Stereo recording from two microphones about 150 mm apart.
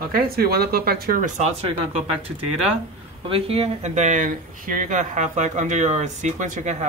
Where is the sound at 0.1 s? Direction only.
90° right.